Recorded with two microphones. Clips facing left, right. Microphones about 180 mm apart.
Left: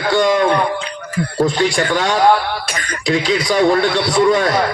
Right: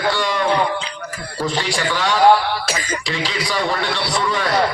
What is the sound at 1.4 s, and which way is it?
A man's voice, 50° left (ahead or behind).